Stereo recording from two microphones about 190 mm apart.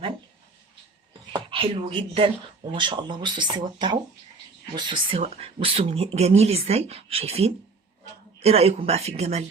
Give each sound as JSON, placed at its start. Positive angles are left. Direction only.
{"t": 1.3, "sound": "speech", "side_deg": -25}